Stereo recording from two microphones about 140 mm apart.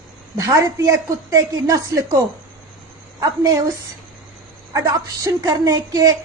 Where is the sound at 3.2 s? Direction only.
25° right (ahead or behind).